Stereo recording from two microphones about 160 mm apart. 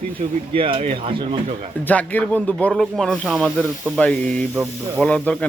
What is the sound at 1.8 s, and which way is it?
A man's voice, 10° left (ahead or behind).